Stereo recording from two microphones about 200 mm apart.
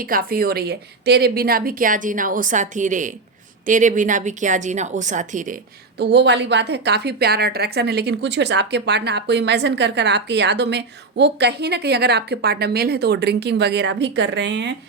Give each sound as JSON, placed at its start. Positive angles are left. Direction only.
{"t": 0.0, "sound": "a woman's voice", "side_deg": -45}
{"t": 6.0, "sound": "a woman's voice", "side_deg": -55}